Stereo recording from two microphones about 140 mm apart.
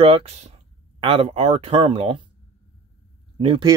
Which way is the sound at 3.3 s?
35° right (ahead or behind).